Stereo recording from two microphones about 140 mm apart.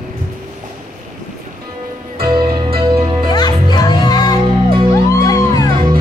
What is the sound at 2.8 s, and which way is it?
Music, 35° right (ahead or behind).